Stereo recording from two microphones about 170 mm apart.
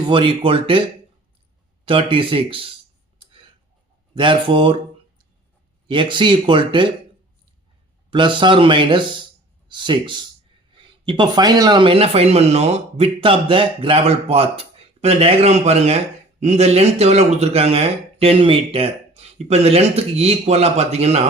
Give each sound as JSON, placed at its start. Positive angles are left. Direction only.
{"t": 0.1, "sound": "speech", "side_deg": -30}
{"t": 4.1, "sound": "speech", "side_deg": -30}
{"t": 5.9, "sound": "speech", "side_deg": -30}
{"t": 8.1, "sound": "speech", "side_deg": -30}